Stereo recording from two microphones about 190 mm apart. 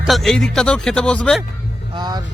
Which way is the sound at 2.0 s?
20° right (ahead or behind).